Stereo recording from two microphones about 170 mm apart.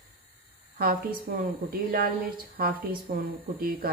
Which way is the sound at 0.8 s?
60° right (ahead or behind).